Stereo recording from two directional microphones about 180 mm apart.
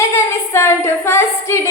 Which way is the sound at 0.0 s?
15° left (ahead or behind).